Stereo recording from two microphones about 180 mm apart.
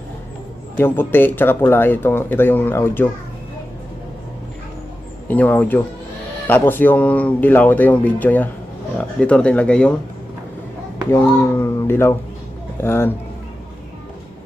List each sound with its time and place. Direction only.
0.7 s speech: 10° left (ahead or behind)
5.3 s speech: 10° left (ahead or behind)
11.1 s speech: 15° left (ahead or behind)